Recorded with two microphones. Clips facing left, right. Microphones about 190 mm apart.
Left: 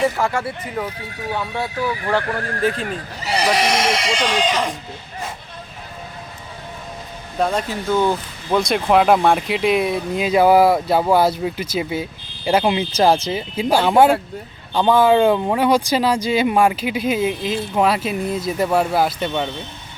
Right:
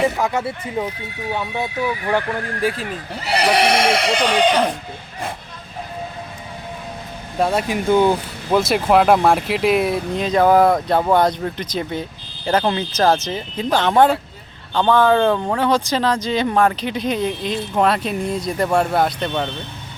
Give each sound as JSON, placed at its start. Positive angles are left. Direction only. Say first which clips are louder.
{"t": 0.2, "sound": "speech", "louder": "right 1 dB", "side_deg": -20}
{"t": 3.2, "sound": "speech", "louder": "right 2 dB", "side_deg": -60}
{"t": 7.3, "sound": "speech", "louder": "right 2 dB", "side_deg": -10}